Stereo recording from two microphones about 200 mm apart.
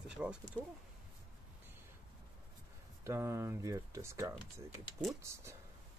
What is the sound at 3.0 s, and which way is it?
Speech, 15° right (ahead or behind).